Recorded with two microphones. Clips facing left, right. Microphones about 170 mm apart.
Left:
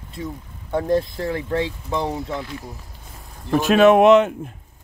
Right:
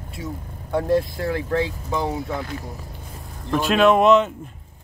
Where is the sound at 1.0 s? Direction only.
25° left (ahead or behind).